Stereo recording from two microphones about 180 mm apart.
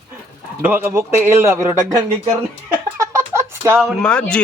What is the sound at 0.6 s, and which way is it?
A man's voice, 10° right (ahead or behind).